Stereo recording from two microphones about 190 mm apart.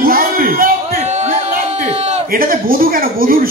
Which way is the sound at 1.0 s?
35° right (ahead or behind).